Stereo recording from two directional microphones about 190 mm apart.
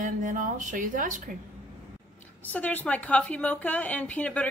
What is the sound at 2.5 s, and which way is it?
A woman's voice, 10° left (ahead or behind).